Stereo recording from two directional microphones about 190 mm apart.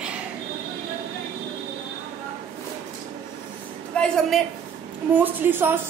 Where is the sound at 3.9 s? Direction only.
5° left (ahead or behind).